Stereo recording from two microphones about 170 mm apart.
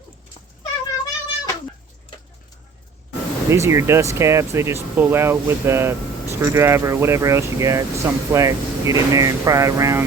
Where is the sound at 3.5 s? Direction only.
15° right (ahead or behind).